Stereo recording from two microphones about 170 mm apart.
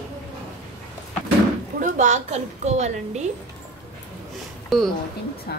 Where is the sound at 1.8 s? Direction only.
45° right (ahead or behind).